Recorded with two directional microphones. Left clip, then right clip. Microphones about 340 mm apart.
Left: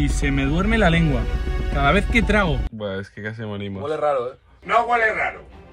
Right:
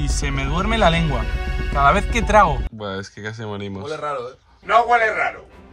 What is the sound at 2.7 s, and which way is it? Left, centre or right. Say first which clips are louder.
Speech: even; centre.